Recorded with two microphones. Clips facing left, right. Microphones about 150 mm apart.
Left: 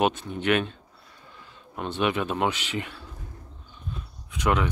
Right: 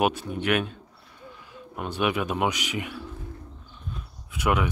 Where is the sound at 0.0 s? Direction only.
10° right (ahead or behind).